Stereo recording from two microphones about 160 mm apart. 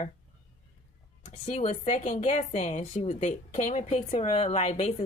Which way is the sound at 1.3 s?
40° left (ahead or behind).